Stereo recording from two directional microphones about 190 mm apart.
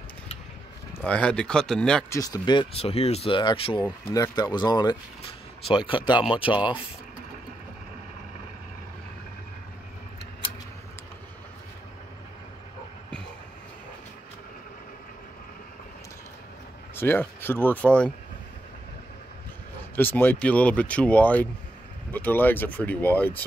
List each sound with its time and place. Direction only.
0.9 s speech: 5° left (ahead or behind)
2.0 s speech: 20° left (ahead or behind)
16.9 s speech: 10° left (ahead or behind)
20.0 s speech: 10° left (ahead or behind)